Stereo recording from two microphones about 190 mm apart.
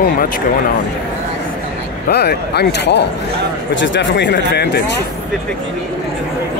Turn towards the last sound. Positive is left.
turn(degrees=65)  # may be behind; listen again after turning